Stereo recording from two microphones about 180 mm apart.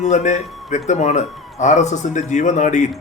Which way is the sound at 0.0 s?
40° left (ahead or behind).